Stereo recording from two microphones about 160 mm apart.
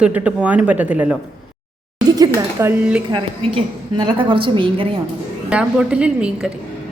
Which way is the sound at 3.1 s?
30° right (ahead or behind).